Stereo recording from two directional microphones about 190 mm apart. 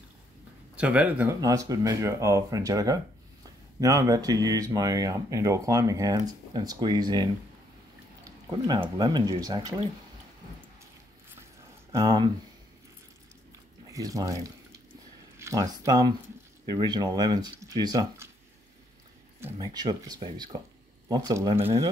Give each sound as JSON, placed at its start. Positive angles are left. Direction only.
{"t": 0.7, "sound": "speech", "side_deg": -10}
{"t": 11.9, "sound": "speech", "side_deg": -20}
{"t": 13.8, "sound": "speech", "side_deg": -20}
{"t": 19.4, "sound": "speech", "side_deg": -20}